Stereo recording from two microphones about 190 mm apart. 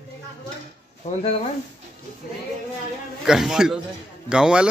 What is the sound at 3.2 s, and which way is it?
A man's voice, 5° right (ahead or behind).